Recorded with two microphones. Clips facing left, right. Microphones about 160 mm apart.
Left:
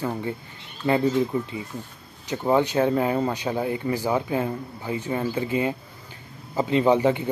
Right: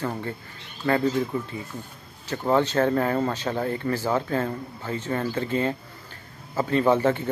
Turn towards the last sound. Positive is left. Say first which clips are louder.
# left 1 dB
turn(degrees=15)  # may be behind; listen again after turning